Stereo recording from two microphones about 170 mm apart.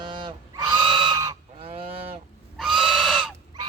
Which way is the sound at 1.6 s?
35° right (ahead or behind).